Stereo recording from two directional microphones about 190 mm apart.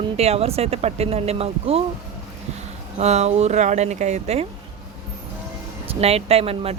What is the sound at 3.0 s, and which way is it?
Speech, 35° right (ahead or behind).